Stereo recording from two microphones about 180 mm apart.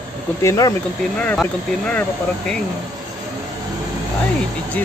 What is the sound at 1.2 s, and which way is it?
Speech, 5° left (ahead or behind).